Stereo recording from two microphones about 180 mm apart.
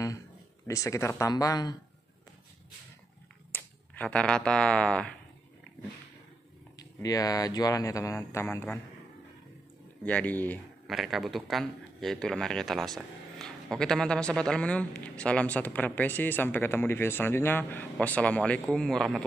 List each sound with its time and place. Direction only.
0.7 s speech: 15° left (ahead or behind)
3.5 s speech: 10° left (ahead or behind)
6.8 s speech: 20° left (ahead or behind)
10.0 s speech: 10° left (ahead or behind)
11.0 s speech: centre (ahead or behind)